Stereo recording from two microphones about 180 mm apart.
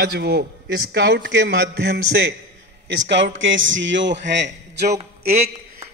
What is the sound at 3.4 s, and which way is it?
Speech, 90° right.